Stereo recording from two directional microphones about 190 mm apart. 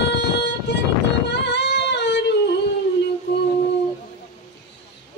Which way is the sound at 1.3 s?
65° left (ahead or behind).